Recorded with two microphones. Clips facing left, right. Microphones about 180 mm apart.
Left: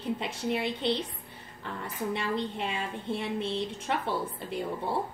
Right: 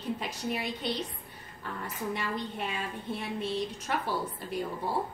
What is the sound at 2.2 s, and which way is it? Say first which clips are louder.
A woman's voice: left 3 dB; 25° left (ahead or behind).